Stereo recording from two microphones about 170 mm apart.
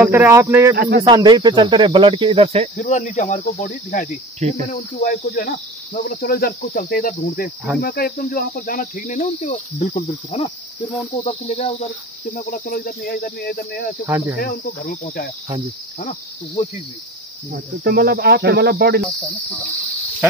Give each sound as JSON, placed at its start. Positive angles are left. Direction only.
{"t": 0.0, "sound": "speech", "side_deg": -15}
{"t": 0.7, "sound": "speech", "side_deg": -70}
{"t": 1.0, "sound": "speech", "side_deg": -25}
{"t": 2.8, "sound": "insect", "side_deg": 50}
{"t": 4.4, "sound": "speech", "side_deg": -40}
{"t": 4.7, "sound": "cricket", "side_deg": 40}
{"t": 5.2, "sound": "insect", "side_deg": 55}
{"t": 14.0, "sound": "speech", "side_deg": -15}
{"t": 14.6, "sound": "insect", "side_deg": 60}
{"t": 17.5, "sound": "speech", "side_deg": -65}
{"t": 19.0, "sound": "speech", "side_deg": 0}